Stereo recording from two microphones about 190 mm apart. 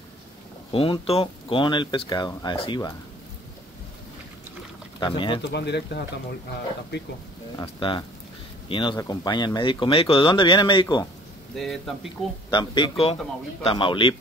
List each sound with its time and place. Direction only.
0.7 s speech: 30° left (ahead or behind)
5.0 s speech: 25° left (ahead or behind)
5.5 s speech: 60° left (ahead or behind)
7.6 s speech: 25° left (ahead or behind)
11.5 s speech: centre (ahead or behind)
12.4 s speech: 25° left (ahead or behind)